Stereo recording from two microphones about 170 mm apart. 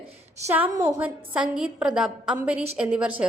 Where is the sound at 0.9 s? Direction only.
10° right (ahead or behind).